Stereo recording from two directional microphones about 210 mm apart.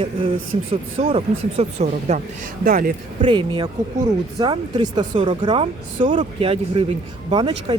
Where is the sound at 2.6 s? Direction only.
40° right (ahead or behind).